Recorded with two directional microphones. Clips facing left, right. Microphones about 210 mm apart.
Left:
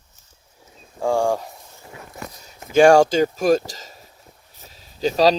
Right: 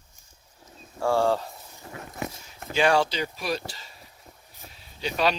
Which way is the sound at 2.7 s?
45° left (ahead or behind).